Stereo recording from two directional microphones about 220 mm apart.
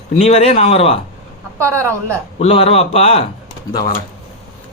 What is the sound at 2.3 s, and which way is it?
Speech, 25° left (ahead or behind).